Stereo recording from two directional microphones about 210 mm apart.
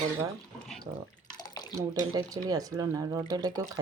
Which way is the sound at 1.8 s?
15° right (ahead or behind).